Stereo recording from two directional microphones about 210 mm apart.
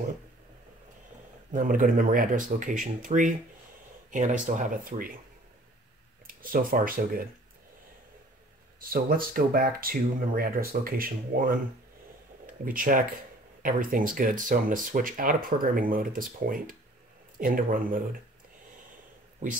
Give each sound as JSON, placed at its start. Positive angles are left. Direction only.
{"t": 1.5, "sound": "speech", "side_deg": -40}
{"t": 6.2, "sound": "speech", "side_deg": -40}
{"t": 8.7, "sound": "speech", "side_deg": -45}